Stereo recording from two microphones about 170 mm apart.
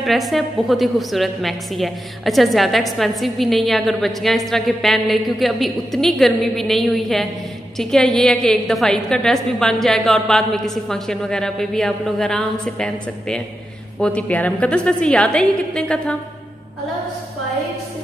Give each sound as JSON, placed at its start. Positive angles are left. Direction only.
{"t": 0.0, "sound": "a woman's voice", "side_deg": 0}